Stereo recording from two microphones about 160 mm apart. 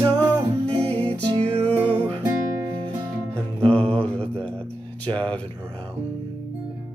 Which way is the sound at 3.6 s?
10° left (ahead or behind).